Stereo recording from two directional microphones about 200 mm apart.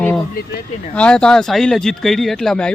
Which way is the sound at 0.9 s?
5° left (ahead or behind).